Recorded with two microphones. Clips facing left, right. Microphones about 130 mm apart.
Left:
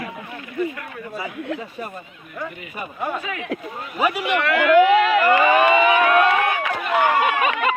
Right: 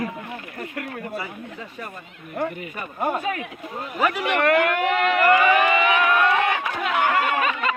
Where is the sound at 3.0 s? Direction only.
45° right (ahead or behind).